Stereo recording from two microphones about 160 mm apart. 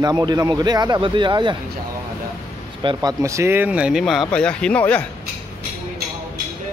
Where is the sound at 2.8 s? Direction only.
20° right (ahead or behind); by 5.1 s 10° left (ahead or behind).